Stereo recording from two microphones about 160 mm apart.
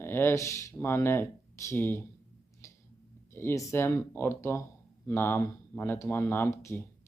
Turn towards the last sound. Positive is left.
turn(degrees=15)  # may be behind; listen again after turning